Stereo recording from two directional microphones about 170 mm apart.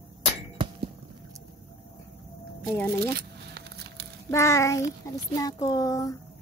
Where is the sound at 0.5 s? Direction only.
30° right (ahead or behind).